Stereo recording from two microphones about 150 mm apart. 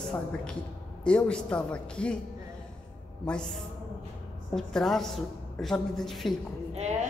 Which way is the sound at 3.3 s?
5° left (ahead or behind).